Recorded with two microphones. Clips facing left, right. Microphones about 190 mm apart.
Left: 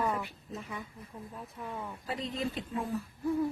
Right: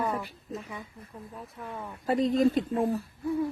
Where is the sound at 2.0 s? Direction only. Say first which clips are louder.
Right 13 dB; 45° right (ahead or behind).